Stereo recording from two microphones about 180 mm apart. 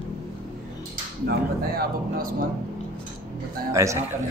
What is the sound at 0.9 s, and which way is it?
Music, 55° right (ahead or behind).